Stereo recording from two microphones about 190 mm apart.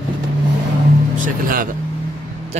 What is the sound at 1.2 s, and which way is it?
Speech, 45° right (ahead or behind).